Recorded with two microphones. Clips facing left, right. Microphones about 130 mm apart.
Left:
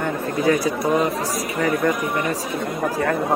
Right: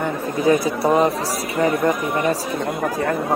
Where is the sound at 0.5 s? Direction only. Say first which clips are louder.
Right 3 dB; 20° right (ahead or behind).